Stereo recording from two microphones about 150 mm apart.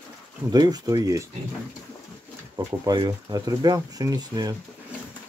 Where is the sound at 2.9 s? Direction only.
25° right (ahead or behind).